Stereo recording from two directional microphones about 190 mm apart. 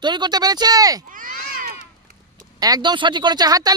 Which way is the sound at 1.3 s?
55° left (ahead or behind).